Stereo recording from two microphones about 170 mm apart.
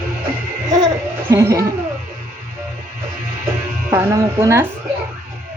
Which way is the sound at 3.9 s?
15° right (ahead or behind).